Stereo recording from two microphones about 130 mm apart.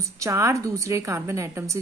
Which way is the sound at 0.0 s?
25° right (ahead or behind).